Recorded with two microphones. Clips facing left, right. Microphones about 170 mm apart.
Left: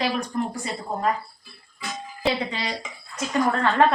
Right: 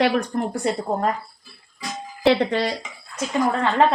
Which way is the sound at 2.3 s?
60° right (ahead or behind).